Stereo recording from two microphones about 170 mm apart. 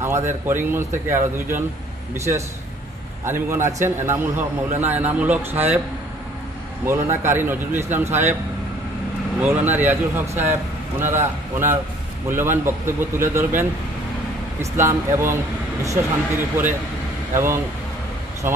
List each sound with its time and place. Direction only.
0.0 s a man's voice: 15° right (ahead or behind)
6.9 s a man's voice: 15° right (ahead or behind)
9.4 s a man's voice: 10° right (ahead or behind)
17.3 s speech: 15° right (ahead or behind)